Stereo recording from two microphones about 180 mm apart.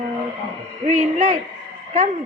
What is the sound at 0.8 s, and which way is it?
Speech, 45° right (ahead or behind).